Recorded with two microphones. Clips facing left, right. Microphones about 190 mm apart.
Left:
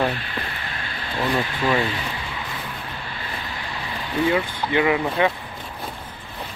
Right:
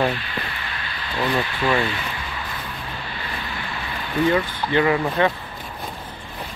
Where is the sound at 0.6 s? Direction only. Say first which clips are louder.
Even; 40° left (ahead or behind).